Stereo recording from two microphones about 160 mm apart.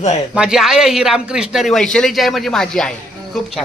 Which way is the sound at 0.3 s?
5° right (ahead or behind).